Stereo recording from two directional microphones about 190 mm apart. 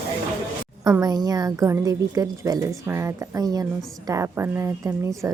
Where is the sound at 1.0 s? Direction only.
20° right (ahead or behind).